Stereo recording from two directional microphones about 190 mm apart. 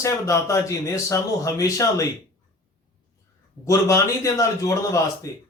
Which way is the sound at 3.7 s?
15° left (ahead or behind).